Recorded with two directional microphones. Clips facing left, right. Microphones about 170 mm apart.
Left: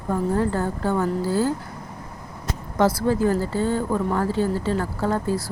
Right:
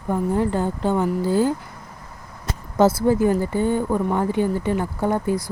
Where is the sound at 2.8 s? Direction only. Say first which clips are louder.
Right 3 dB; 25° right (ahead or behind).